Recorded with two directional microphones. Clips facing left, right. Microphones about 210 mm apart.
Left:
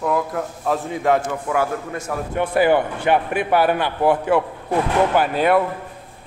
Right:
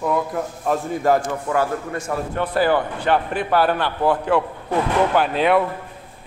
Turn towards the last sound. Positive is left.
turn(degrees=5)  # may be behind; listen again after turning